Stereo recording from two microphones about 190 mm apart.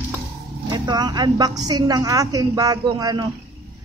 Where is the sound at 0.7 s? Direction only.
20° right (ahead or behind).